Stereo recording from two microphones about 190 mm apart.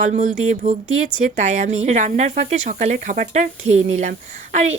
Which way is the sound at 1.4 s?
40° right (ahead or behind).